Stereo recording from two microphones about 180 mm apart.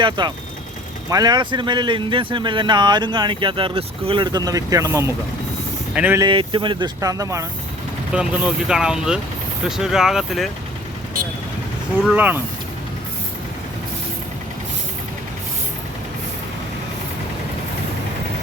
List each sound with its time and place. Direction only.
0.0 s speech: 25° right (ahead or behind); by 6.1 s 10° right (ahead or behind)
6.1 s speech: 25° right (ahead or behind)
8.1 s speech: 5° right (ahead or behind)
12.1 s speech: 10° right (ahead or behind)